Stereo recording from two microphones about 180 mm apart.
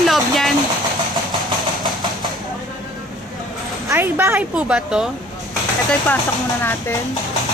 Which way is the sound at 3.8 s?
15° right (ahead or behind).